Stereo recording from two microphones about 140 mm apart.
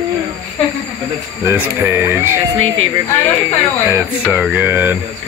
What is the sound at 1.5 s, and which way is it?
Speech, 20° right (ahead or behind).